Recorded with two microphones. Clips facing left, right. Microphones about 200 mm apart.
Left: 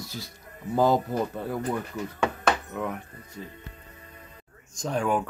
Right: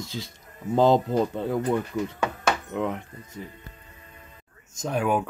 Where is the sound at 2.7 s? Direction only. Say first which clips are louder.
Right 4 dB; 20° right (ahead or behind).